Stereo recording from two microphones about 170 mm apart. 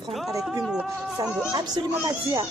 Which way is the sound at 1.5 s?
25° right (ahead or behind).